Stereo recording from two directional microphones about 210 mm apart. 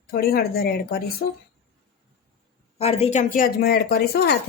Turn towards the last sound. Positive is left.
turn(degrees=50)  # may be behind; listen again after turning